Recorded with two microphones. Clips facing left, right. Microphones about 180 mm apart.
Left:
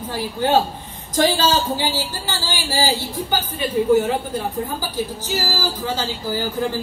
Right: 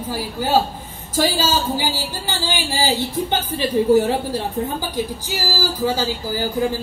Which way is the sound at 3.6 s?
35° right (ahead or behind).